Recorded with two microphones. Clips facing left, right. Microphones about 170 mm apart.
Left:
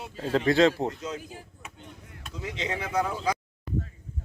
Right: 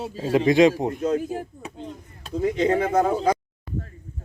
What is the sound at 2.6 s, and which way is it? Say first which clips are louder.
Speech: right 8 dB; 50° right (ahead or behind).